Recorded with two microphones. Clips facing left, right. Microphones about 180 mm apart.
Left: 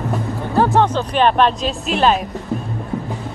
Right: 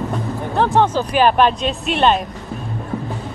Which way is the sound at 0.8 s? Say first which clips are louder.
Right 1 dB; 5° right (ahead or behind).